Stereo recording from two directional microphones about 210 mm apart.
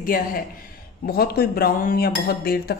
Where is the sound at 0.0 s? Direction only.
45° left (ahead or behind).